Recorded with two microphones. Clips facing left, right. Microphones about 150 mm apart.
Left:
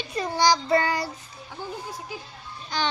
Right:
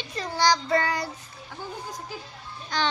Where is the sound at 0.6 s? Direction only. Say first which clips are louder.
Left 2 dB; 30° left (ahead or behind).